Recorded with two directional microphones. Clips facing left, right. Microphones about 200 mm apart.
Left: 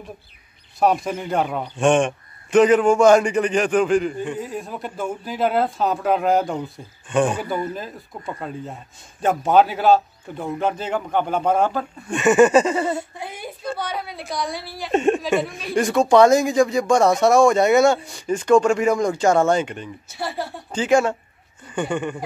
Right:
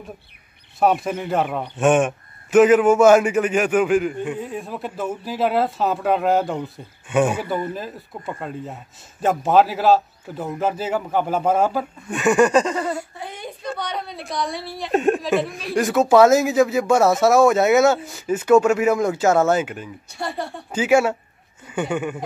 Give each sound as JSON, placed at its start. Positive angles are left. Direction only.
{"t": 0.7, "sound": "a man's voice", "side_deg": -5}
{"t": 20.7, "sound": "speech", "side_deg": -10}